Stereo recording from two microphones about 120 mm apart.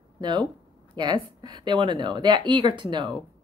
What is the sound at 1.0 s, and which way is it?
Speech, 40° right (ahead or behind).